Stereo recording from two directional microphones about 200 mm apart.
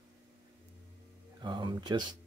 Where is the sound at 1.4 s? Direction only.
20° right (ahead or behind).